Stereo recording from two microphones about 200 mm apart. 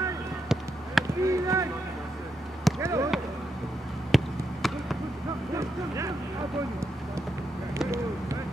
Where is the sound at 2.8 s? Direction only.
15° right (ahead or behind).